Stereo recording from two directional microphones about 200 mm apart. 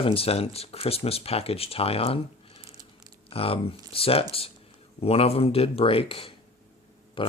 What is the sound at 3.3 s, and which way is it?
Speech, 30° left (ahead or behind).